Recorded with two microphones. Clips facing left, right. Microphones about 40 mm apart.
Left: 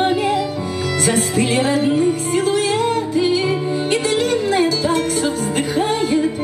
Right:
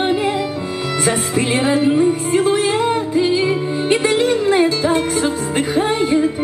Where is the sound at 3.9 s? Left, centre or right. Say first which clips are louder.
Right 4 dB; right.